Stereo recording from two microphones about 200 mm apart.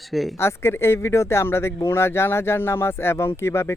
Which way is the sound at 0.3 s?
10° left (ahead or behind).